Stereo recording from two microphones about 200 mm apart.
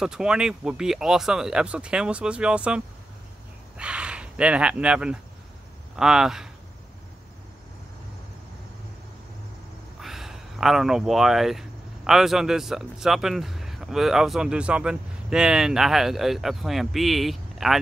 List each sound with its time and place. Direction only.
0.0 s a man's voice: 5° right (ahead or behind)
9.9 s a sound: centre (ahead or behind)
12.1 s a man's voice: centre (ahead or behind)